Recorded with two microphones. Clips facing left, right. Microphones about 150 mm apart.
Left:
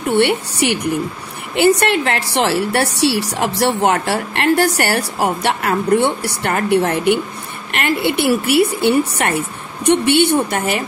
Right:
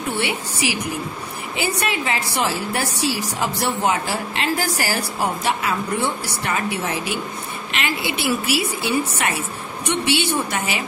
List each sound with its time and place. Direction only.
0.1 s a woman's voice: 70° left (ahead or behind)